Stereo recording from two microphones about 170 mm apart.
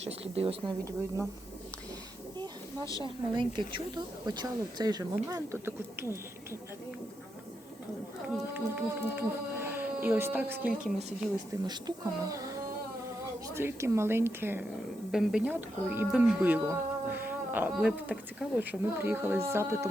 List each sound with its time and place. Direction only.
0.0 s speech: 35° right (ahead or behind)
3.0 s a woman's voice: 30° right (ahead or behind)
8.5 s speech: 10° right (ahead or behind)
11.6 s a woman's voice: 25° right (ahead or behind)
15.1 s speech: 5° right (ahead or behind)